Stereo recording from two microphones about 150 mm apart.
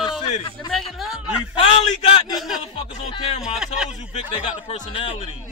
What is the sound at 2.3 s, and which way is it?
Speech, centre (ahead or behind).